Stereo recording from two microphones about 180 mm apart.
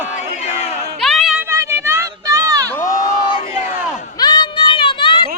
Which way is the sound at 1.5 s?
15° right (ahead or behind).